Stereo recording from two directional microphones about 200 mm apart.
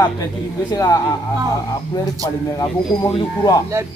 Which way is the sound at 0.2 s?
20° left (ahead or behind).